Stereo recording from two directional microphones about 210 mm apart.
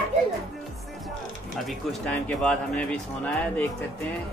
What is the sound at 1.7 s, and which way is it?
Speech, 5° left (ahead or behind).